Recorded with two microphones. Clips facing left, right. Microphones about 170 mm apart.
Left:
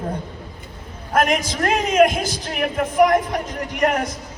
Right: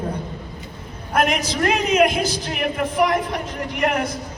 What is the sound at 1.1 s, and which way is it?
A man's voice, 45° left (ahead or behind).